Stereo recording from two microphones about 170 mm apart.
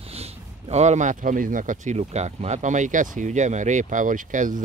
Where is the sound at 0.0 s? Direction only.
35° right (ahead or behind).